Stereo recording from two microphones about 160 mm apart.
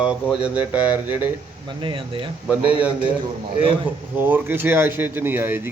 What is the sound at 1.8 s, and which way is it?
Speech, 30° right (ahead or behind).